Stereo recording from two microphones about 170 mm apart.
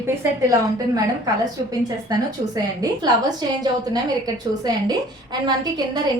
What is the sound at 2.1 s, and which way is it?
Speech, 20° right (ahead or behind).